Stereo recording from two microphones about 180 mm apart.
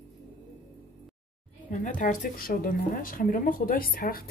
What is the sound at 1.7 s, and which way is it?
Speech, 45° left (ahead or behind).